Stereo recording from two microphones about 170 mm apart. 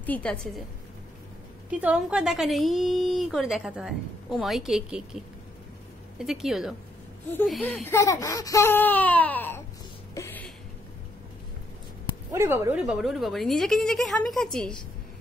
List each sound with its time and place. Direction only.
0.0 s speech: 10° left (ahead or behind)
1.7 s speech: 10° right (ahead or behind)
6.1 s speech: 5° right (ahead or behind)
7.8 s speech: 15° left (ahead or behind)
10.1 s music: 15° left (ahead or behind)
12.3 s speech: 15° right (ahead or behind)
12.8 s speech: centre (ahead or behind)